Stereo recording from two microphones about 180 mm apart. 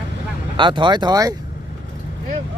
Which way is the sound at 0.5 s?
25° right (ahead or behind).